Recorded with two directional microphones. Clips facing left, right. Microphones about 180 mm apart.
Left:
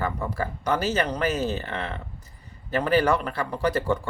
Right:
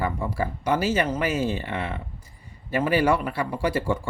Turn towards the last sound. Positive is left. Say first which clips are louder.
# even
turn(degrees=-10)  # may be behind; listen again after turning